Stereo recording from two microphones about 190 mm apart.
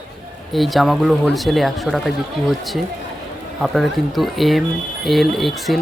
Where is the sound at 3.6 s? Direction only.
Centre (ahead or behind).